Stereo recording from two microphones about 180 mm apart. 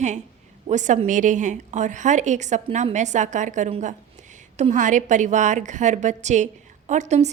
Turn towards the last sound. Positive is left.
turn(degrees=-40)  # may be behind; listen again after turning